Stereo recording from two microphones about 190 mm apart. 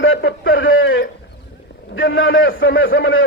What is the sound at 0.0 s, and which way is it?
A man's voice, 85° left.